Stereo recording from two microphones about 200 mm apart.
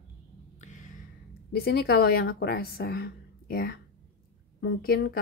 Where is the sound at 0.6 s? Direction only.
40° left (ahead or behind).